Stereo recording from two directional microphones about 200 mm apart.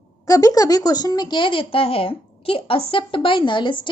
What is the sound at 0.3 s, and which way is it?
Speech, 15° left (ahead or behind).